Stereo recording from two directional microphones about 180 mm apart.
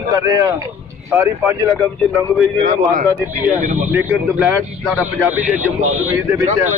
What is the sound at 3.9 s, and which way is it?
Speech, 10° right (ahead or behind).